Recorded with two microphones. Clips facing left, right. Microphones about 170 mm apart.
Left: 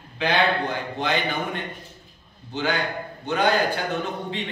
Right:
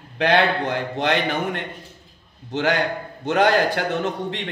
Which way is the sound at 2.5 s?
90° right.